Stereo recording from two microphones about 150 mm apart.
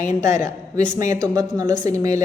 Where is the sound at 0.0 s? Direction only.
20° right (ahead or behind).